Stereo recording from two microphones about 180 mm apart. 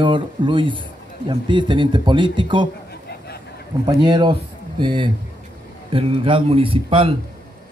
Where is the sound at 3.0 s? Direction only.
65° left (ahead or behind).